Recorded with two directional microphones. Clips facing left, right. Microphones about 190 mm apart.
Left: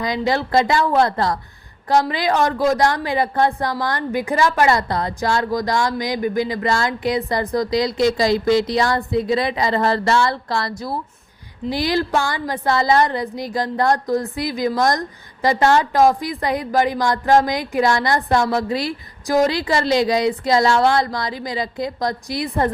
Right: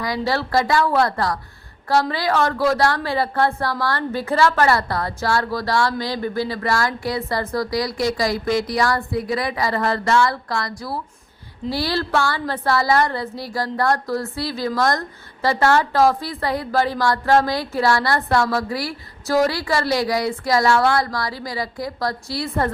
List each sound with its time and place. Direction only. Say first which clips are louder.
0.0 s a woman's voice: left 2 dB; 20° left (ahead or behind)